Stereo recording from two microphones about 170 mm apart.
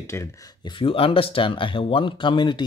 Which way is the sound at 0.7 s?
30° left (ahead or behind).